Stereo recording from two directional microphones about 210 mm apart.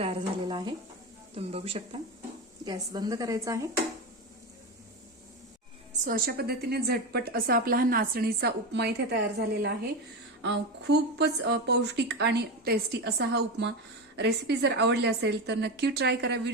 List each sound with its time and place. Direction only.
0.0 s a woman's voice: 25° right (ahead or behind)
6.1 s a woman's voice: 45° right (ahead or behind)
10.4 s a woman's voice: 55° right (ahead or behind)